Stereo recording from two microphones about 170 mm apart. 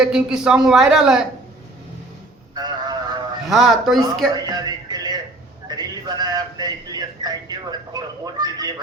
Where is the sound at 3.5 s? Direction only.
Centre (ahead or behind).